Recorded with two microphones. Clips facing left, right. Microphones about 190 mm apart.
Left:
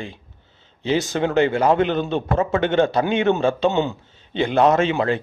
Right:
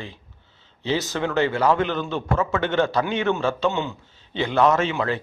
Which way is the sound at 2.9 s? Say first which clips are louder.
Left 4 dB; 20° left (ahead or behind).